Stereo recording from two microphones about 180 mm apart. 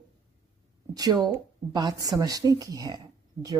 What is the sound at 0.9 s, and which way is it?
Speech, 20° right (ahead or behind).